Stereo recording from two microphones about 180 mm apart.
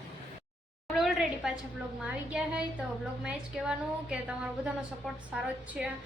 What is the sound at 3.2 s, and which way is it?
Speech, 5° right (ahead or behind).